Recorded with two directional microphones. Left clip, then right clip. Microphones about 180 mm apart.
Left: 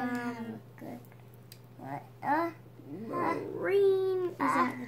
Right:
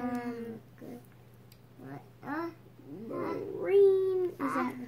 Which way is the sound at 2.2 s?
20° left (ahead or behind).